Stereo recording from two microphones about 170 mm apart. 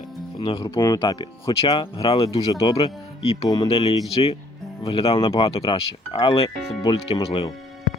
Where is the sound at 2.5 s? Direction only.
20° left (ahead or behind).